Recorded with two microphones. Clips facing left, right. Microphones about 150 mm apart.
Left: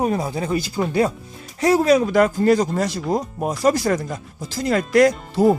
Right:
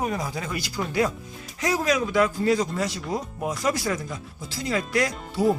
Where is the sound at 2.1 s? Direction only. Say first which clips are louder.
Left 6 dB; 45° left (ahead or behind).